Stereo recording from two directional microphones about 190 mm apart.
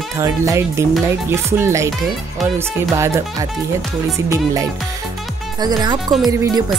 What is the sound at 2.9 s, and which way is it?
Speech, 15° right (ahead or behind).